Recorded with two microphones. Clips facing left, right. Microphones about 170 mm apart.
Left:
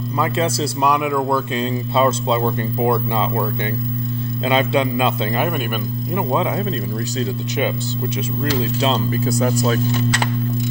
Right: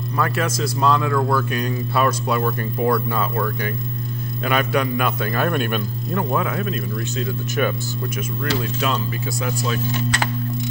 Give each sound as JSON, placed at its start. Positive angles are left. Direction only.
{"t": 0.2, "sound": "speech", "side_deg": 25}
{"t": 4.5, "sound": "speech", "side_deg": 25}
{"t": 5.5, "sound": "speech", "side_deg": 5}
{"t": 6.3, "sound": "speech", "side_deg": 25}
{"t": 8.5, "sound": "speech", "side_deg": 30}